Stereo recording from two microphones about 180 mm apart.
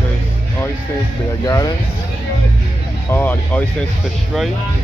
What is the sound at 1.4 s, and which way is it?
Speech, 20° left (ahead or behind).